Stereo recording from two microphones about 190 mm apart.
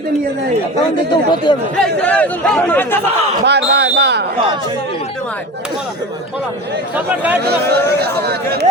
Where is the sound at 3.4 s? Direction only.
65° right (ahead or behind).